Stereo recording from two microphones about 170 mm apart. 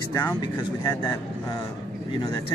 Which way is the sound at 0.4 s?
25° left (ahead or behind).